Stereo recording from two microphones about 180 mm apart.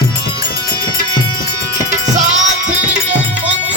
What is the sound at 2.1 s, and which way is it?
Music, 40° right (ahead or behind).